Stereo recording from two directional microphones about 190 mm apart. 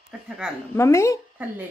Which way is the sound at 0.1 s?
5° right (ahead or behind).